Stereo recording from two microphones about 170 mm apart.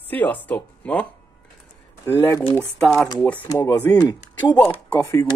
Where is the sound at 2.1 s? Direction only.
15° left (ahead or behind).